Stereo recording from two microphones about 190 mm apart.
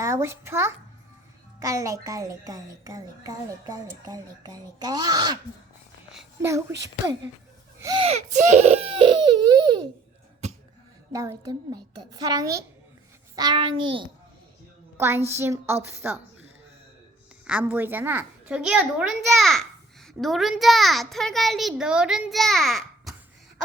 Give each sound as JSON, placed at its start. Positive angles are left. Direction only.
{"t": 0.0, "sound": "a woman's voice", "side_deg": -15}
{"t": 6.4, "sound": "a woman's voice", "side_deg": -15}
{"t": 7.8, "sound": "speech", "side_deg": -20}
{"t": 8.0, "sound": "a child's voice", "side_deg": -35}
{"t": 11.1, "sound": "a child's voice", "side_deg": -15}
{"t": 14.9, "sound": "a woman's voice", "side_deg": -15}